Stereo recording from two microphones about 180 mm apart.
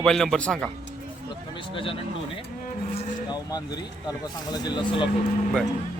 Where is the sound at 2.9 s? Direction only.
20° left (ahead or behind).